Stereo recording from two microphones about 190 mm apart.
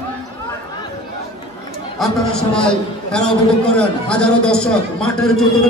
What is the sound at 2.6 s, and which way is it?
A man's voice, 5° left (ahead or behind).